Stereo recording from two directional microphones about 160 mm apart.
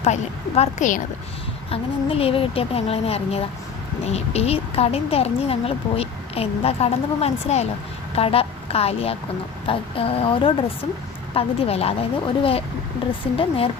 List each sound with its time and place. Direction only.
0.0 s a woman's voice: 40° left (ahead or behind)
1.7 s a woman's voice: 35° left (ahead or behind)